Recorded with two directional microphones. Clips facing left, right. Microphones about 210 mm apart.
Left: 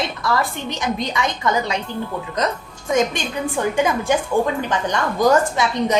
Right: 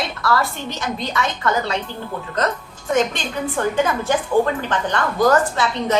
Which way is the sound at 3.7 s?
15° left (ahead or behind).